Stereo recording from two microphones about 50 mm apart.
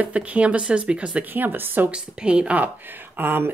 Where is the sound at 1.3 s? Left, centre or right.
Right.